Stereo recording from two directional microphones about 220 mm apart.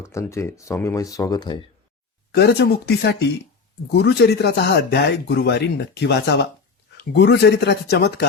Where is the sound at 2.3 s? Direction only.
50° left (ahead or behind).